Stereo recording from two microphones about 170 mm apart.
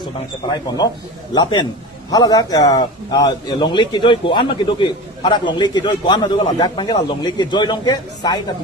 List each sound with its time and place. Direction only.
0.5 s a man's voice: 25° left (ahead or behind)